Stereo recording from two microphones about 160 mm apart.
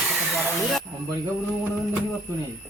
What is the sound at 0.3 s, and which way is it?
Speech, centre (ahead or behind).